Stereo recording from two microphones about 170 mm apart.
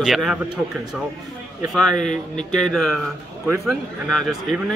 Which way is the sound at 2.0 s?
45° left (ahead or behind).